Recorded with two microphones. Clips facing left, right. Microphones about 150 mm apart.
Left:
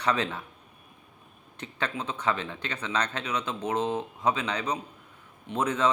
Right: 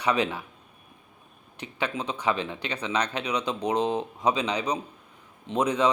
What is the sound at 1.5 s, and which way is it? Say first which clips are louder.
Speech: right 2 dB; 15° right (ahead or behind).